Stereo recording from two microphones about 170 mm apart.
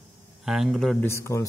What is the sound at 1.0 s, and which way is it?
Speech, 15° left (ahead or behind).